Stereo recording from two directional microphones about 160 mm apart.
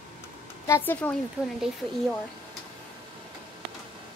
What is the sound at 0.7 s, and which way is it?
Speech, 10° left (ahead or behind).